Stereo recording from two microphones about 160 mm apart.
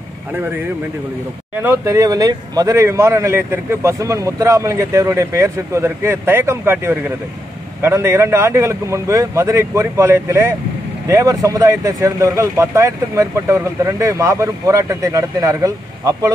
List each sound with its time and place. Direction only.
1.6 s speech: 15° right (ahead or behind)